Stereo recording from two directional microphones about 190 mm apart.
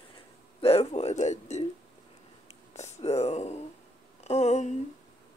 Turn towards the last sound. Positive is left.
turn(degrees=35)  # may be behind; listen again after turning